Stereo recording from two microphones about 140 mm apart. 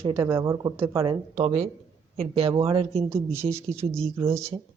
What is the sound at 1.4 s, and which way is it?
Speech, 50° right (ahead or behind).